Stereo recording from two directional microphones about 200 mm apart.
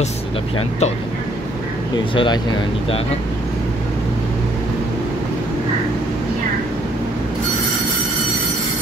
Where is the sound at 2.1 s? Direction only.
25° left (ahead or behind).